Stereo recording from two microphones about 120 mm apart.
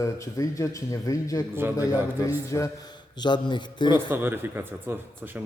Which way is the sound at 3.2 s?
40° left (ahead or behind).